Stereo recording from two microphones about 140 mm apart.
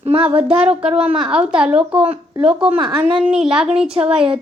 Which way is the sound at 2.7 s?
35° right (ahead or behind).